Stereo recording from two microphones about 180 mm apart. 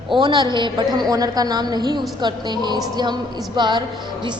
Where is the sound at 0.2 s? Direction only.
25° right (ahead or behind).